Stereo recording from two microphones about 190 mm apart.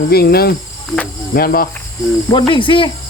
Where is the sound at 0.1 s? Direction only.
55° left (ahead or behind).